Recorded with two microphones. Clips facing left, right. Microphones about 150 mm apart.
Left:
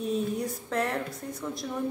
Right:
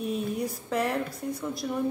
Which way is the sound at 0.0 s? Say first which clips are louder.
Left 1 dB; 5° right (ahead or behind).